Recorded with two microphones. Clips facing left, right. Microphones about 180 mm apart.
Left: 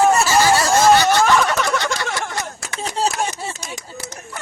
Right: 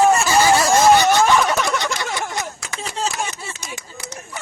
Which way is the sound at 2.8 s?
35° left (ahead or behind).